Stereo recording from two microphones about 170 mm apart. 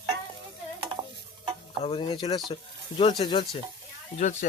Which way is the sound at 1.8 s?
30° left (ahead or behind).